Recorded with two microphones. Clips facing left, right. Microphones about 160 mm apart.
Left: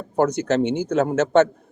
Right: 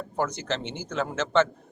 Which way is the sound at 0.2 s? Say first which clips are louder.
Left 10 dB; 60° left (ahead or behind).